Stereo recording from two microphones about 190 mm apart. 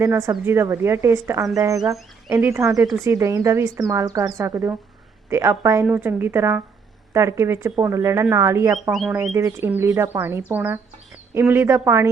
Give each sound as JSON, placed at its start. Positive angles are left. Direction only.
{"t": 0.0, "sound": "speech", "side_deg": -15}
{"t": 8.9, "sound": "speech", "side_deg": 0}
{"t": 9.1, "sound": "speech", "side_deg": -15}